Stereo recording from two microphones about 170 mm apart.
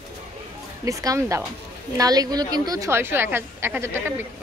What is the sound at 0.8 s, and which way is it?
A woman's voice, 20° right (ahead or behind).